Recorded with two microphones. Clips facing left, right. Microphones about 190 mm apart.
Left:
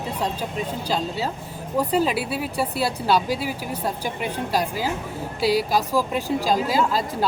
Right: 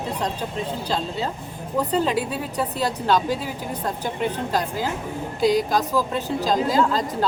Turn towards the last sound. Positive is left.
turn(degrees=10)  # may be behind; listen again after turning